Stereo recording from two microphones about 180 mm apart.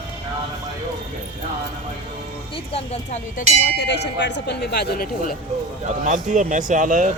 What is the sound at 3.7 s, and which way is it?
Speech, 70° left (ahead or behind).